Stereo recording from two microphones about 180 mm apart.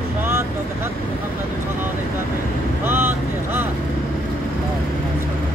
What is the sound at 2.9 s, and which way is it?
Vehicle, 10° right (ahead or behind).